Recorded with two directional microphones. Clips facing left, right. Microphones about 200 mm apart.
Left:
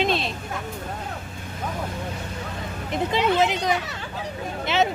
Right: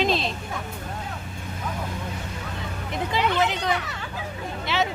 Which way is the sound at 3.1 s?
20° left (ahead or behind).